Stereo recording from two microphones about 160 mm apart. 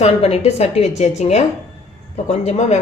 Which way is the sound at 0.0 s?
40° left (ahead or behind).